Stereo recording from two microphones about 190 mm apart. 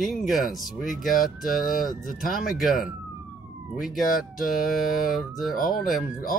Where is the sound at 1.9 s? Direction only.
45° left (ahead or behind).